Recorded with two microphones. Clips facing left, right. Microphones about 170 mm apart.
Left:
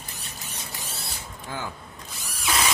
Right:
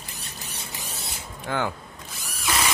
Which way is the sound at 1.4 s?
70° right (ahead or behind).